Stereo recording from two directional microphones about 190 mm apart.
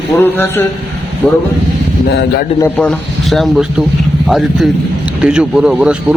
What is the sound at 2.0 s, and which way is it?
Speech, 60° left (ahead or behind).